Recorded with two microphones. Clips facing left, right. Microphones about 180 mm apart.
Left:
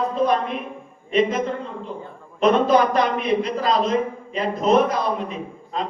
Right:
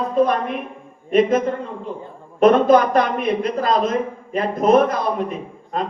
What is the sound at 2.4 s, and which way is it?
A man's voice, 50° right (ahead or behind).